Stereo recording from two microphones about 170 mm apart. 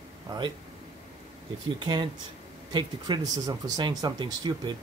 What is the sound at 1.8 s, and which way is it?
Speech, 25° right (ahead or behind).